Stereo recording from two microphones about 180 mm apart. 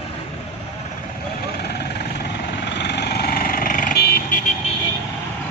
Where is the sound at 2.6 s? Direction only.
70° left (ahead or behind).